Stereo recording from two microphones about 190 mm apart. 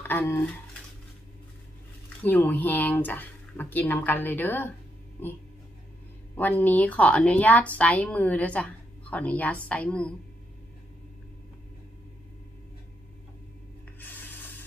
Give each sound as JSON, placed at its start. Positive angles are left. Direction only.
{"t": 0.0, "sound": "speech", "side_deg": 10}
{"t": 2.2, "sound": "speech", "side_deg": 10}
{"t": 6.3, "sound": "speech", "side_deg": 10}
{"t": 13.9, "sound": "spray", "side_deg": 10}